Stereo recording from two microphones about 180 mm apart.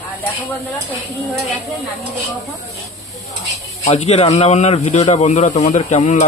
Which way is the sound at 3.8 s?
40° left (ahead or behind).